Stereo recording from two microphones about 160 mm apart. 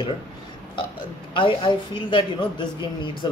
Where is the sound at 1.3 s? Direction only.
30° left (ahead or behind).